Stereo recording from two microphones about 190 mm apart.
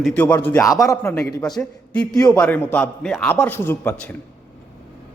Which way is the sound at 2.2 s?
15° left (ahead or behind).